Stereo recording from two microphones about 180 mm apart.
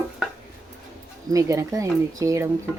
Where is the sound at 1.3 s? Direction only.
20° right (ahead or behind).